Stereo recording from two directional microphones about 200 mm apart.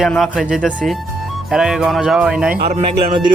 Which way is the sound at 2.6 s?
30° right (ahead or behind).